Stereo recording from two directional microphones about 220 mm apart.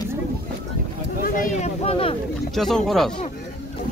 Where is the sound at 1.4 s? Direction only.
30° left (ahead or behind).